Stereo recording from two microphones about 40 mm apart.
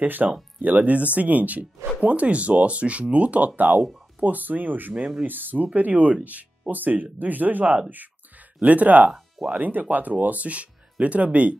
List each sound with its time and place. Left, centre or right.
0.0 s speech: right